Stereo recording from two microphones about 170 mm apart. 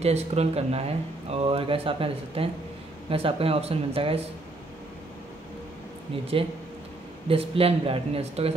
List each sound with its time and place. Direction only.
0.0 s speech: 40° right (ahead or behind)
6.3 s speech: 30° right (ahead or behind)